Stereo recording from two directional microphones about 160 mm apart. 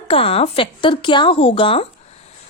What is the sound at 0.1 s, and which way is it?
Speech, 35° left (ahead or behind).